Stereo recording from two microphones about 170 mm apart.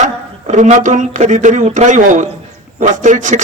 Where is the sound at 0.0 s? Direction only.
45° right (ahead or behind).